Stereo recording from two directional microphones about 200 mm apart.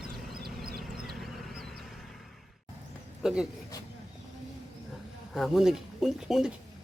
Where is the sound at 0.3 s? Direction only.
50° right (ahead or behind).